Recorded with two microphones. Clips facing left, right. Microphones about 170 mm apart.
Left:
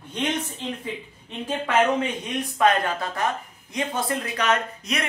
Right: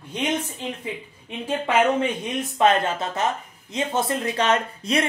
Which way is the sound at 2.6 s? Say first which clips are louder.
Right 2 dB; 25° right (ahead or behind).